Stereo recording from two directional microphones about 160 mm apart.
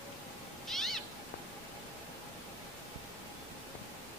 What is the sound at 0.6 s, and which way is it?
Cat, centre (ahead or behind).